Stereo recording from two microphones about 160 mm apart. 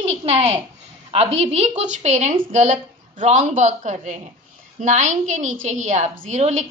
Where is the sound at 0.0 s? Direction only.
40° right (ahead or behind).